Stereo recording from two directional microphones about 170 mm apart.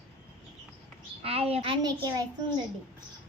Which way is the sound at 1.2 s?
35° right (ahead or behind).